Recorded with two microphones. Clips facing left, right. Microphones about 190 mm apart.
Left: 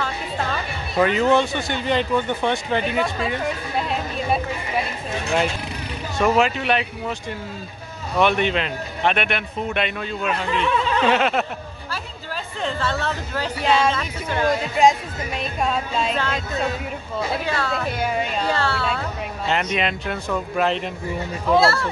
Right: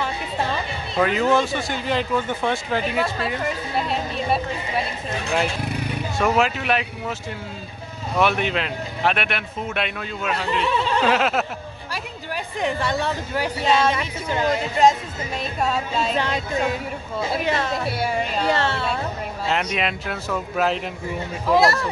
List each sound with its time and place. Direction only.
0.0 s music: 20° right (ahead or behind)
0.9 s speech: centre (ahead or behind)
6.1 s speech: centre (ahead or behind)
8.2 s speech: 5° right (ahead or behind)
12.5 s speech: 15° right (ahead or behind)
15.6 s speech: 5° right (ahead or behind)
18.0 s speech: 5° right (ahead or behind)
18.5 s speech: 20° right (ahead or behind)
19.4 s speech: 5° right (ahead or behind)
21.5 s speech: 15° right (ahead or behind)